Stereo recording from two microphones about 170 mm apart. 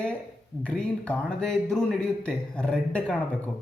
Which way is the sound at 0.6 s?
5° left (ahead or behind).